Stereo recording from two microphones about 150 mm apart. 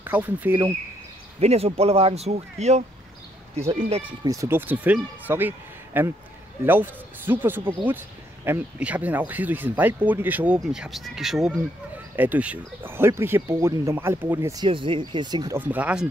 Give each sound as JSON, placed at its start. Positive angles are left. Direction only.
{"t": 0.0, "sound": "speech", "side_deg": -10}
{"t": 1.4, "sound": "speech", "side_deg": -45}
{"t": 4.2, "sound": "speech", "side_deg": -20}
{"t": 14.6, "sound": "speech", "side_deg": -35}
{"t": 15.5, "sound": "speech", "side_deg": -10}